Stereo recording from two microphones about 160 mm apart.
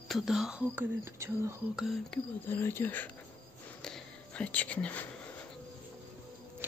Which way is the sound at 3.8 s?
5° left (ahead or behind).